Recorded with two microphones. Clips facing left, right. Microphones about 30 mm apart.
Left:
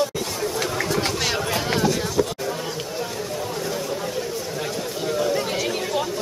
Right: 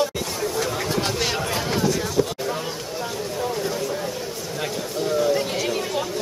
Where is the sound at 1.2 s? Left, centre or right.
Centre.